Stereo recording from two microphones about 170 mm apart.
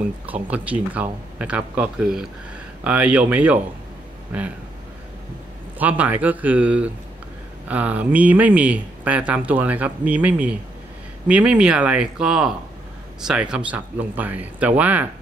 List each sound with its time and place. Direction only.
0.3 s speech: 10° right (ahead or behind)
5.8 s speech: 10° right (ahead or behind)